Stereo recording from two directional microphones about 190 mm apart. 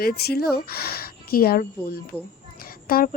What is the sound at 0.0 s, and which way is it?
A woman's voice, 55° left (ahead or behind).